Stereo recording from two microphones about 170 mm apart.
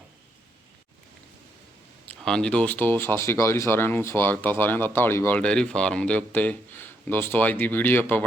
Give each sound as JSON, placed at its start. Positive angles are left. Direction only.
{"t": 2.0, "sound": "speech", "side_deg": 5}